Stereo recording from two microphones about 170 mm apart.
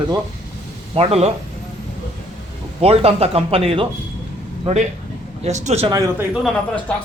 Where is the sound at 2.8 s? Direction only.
35° right (ahead or behind).